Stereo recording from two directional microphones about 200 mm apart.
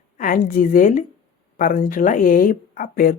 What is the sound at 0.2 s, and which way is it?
Speech, 45° left (ahead or behind).